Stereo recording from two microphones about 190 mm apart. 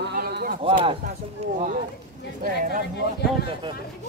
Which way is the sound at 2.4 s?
50° right (ahead or behind).